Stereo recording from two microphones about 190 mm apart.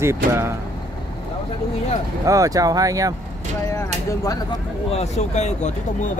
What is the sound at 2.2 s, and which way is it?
Speech, 15° right (ahead or behind).